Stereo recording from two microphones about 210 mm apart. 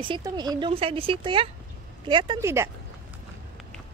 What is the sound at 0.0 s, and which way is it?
A woman's voice, 20° right (ahead or behind).